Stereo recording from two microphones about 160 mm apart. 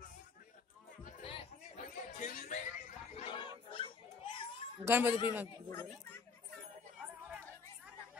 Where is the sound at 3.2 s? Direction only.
30° left (ahead or behind).